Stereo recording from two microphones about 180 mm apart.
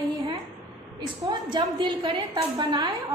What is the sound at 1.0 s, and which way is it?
A woman's voice, 25° right (ahead or behind).